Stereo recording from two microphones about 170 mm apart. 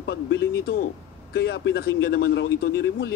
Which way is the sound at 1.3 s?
70° left (ahead or behind).